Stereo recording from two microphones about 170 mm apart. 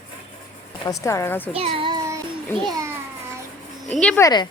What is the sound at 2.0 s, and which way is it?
Child singing, 20° right (ahead or behind).